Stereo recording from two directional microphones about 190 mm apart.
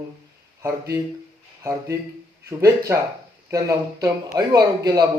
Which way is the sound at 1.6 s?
15° right (ahead or behind).